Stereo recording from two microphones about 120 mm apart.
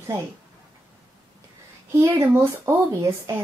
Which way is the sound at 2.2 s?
20° right (ahead or behind).